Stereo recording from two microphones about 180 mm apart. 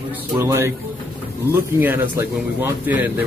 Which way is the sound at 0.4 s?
15° right (ahead or behind).